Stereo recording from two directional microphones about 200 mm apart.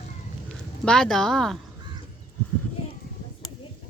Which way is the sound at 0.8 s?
5° left (ahead or behind).